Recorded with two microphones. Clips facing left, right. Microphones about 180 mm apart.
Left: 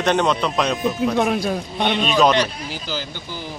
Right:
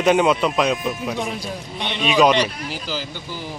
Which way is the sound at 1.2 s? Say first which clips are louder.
Left 7 dB; 65° left (ahead or behind).